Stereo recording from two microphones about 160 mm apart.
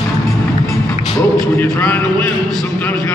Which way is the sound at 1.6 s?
5° left (ahead or behind).